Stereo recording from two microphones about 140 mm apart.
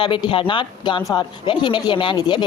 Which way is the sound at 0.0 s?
35° left (ahead or behind).